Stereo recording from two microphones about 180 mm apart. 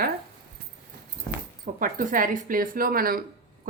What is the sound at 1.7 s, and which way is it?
Speech, 50° right (ahead or behind).